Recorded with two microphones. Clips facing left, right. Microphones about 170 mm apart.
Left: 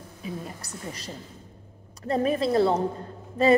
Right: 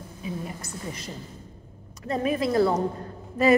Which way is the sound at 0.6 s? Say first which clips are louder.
Right 2 dB; 35° left (ahead or behind).